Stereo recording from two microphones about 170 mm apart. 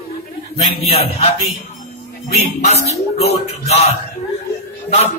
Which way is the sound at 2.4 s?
40° left (ahead or behind).